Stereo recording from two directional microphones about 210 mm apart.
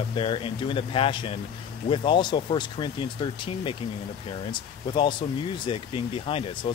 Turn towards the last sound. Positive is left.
turn(degrees=25)  # may be behind; listen again after turning